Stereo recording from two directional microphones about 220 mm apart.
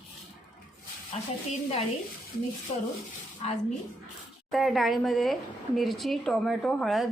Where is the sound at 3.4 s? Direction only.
25° left (ahead or behind).